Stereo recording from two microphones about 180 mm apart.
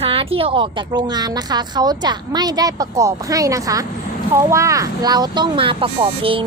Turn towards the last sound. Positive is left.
turn(degrees=-30)  # may be behind; listen again after turning